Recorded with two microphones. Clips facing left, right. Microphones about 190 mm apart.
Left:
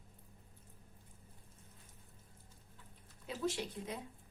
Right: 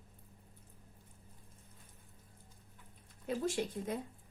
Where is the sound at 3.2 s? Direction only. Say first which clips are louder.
Right 4 dB; 50° right (ahead or behind).